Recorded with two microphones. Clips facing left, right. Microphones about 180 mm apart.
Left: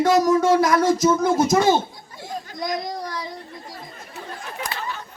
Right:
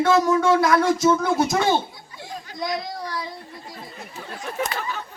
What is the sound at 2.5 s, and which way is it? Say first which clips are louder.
Speech: even; 45° left (ahead or behind).